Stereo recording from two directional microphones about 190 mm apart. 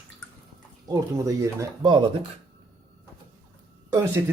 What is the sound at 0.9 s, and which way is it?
Speech, 15° right (ahead or behind).